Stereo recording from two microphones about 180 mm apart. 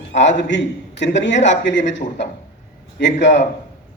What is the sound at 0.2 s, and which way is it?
A man's voice, 80° left.